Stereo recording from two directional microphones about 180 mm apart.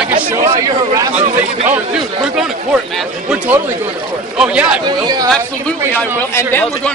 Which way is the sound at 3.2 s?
10° right (ahead or behind).